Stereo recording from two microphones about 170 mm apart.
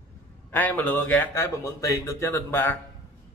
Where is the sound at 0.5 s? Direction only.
10° left (ahead or behind).